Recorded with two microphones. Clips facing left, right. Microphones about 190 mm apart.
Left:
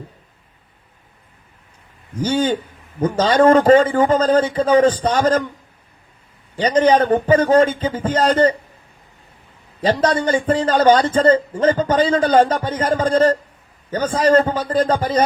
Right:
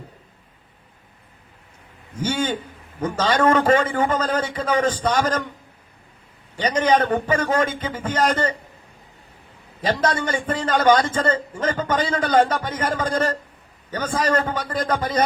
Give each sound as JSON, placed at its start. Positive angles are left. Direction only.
{"t": 2.2, "sound": "a man's voice", "side_deg": 35}
{"t": 6.6, "sound": "a man's voice", "side_deg": 30}
{"t": 9.8, "sound": "a man's voice", "side_deg": 30}